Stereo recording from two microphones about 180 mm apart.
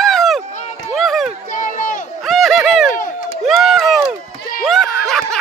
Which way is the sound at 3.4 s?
Centre (ahead or behind).